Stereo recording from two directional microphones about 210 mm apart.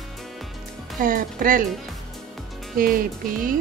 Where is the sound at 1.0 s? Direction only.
40° right (ahead or behind).